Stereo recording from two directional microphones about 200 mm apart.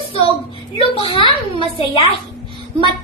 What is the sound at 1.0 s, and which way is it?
Speech, 25° left (ahead or behind).